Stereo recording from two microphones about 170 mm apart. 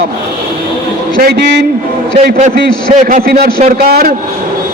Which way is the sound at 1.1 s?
65° right (ahead or behind).